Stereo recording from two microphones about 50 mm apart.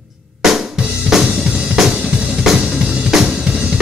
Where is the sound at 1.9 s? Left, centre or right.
Right.